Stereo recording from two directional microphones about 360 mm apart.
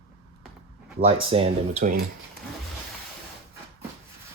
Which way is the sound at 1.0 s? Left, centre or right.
Centre.